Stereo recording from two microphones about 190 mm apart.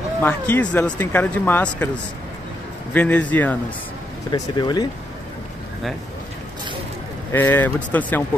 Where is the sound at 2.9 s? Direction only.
10° left (ahead or behind).